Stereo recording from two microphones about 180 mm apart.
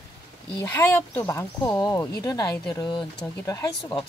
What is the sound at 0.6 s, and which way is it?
Speech, 10° left (ahead or behind).